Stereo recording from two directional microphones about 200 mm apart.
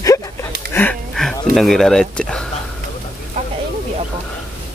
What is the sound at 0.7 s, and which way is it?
Speech, 5° left (ahead or behind).